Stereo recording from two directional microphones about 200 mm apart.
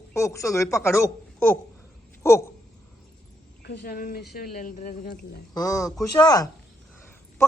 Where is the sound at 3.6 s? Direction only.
55° left (ahead or behind); by 5.1 s 35° left (ahead or behind).